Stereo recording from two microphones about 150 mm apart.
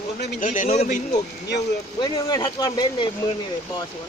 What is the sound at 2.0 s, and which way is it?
Speech, 25° left (ahead or behind).